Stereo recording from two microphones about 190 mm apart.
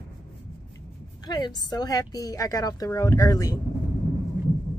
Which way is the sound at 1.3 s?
20° left (ahead or behind).